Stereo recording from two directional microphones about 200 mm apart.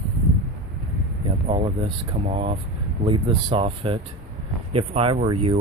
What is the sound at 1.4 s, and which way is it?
Speech, 30° right (ahead or behind).